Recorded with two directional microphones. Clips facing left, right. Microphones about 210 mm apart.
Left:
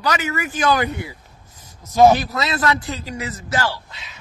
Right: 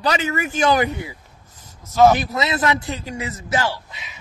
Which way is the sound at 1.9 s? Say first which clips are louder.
Left 1 dB; 15° left (ahead or behind).